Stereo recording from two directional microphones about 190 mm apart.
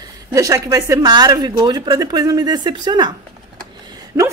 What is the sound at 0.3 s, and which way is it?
Speech, 20° right (ahead or behind).